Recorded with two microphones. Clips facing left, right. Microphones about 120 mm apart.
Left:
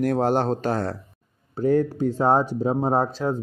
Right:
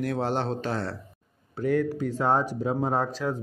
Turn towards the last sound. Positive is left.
turn(degrees=30)  # may be behind; listen again after turning